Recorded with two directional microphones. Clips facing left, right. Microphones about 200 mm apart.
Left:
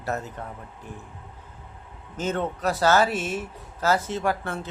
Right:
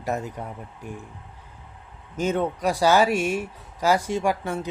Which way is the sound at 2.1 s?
10° right (ahead or behind).